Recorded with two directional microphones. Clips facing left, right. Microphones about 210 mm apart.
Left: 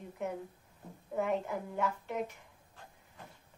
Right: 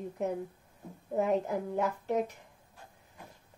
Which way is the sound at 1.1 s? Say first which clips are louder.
Right 4 dB; 40° right (ahead or behind).